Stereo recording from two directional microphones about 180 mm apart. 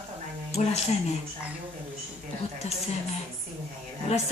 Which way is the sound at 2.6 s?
40° left (ahead or behind).